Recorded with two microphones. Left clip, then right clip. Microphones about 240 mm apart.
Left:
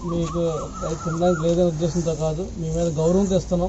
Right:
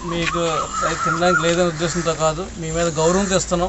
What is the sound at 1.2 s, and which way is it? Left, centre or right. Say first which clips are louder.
Speech: right 1 dB; right.